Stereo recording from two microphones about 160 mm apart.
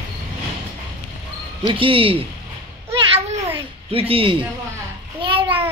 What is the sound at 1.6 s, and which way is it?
Speech, 35° right (ahead or behind).